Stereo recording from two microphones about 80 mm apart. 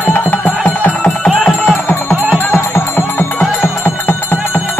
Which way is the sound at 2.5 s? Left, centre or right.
Left.